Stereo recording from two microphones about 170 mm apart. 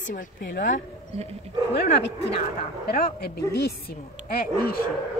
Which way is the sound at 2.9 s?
65° left (ahead or behind).